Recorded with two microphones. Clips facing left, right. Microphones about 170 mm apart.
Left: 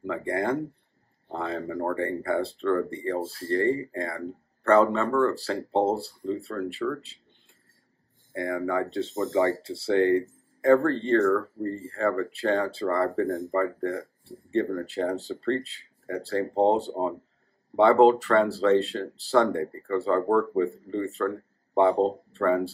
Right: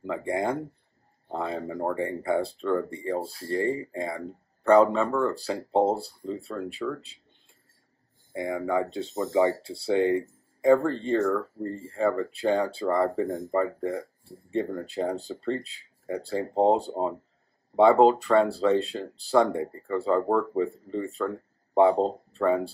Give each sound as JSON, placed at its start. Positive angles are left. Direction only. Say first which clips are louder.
{"t": 0.0, "sound": "speech", "louder": "even", "side_deg": -10}
{"t": 5.0, "sound": "speech", "louder": "left 2 dB", "side_deg": -5}
{"t": 8.3, "sound": "speech", "louder": "even", "side_deg": -15}
{"t": 17.7, "sound": "speech", "louder": "even", "side_deg": -10}